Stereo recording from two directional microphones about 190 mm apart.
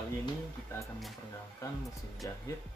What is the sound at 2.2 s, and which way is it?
Speech, 15° left (ahead or behind).